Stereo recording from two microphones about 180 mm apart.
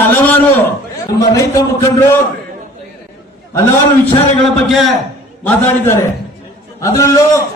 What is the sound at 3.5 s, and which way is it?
Speech, 15° left (ahead or behind).